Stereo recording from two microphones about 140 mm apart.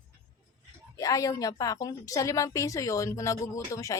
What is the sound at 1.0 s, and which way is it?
A woman's voice, 25° left (ahead or behind).